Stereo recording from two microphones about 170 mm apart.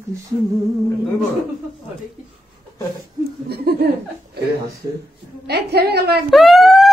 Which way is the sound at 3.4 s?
70° right (ahead or behind).